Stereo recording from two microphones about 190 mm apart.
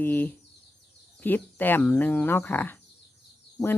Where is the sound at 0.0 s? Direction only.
10° left (ahead or behind).